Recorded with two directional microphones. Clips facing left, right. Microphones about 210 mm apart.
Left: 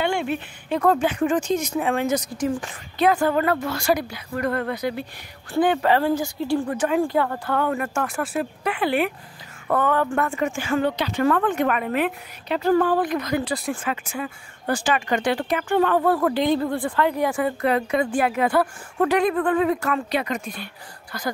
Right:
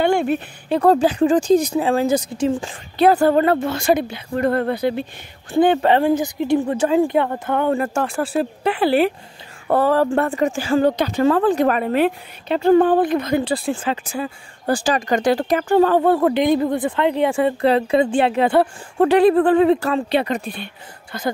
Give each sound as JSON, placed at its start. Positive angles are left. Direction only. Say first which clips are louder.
{"t": 0.0, "sound": "a woman's voice", "louder": "right 6 dB", "side_deg": -45}